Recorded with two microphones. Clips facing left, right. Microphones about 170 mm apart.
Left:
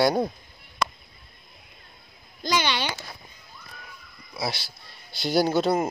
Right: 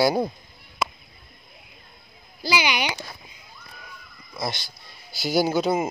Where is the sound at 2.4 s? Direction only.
10° right (ahead or behind).